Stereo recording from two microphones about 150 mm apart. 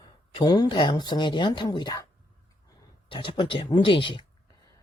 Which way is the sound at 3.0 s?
35° left (ahead or behind).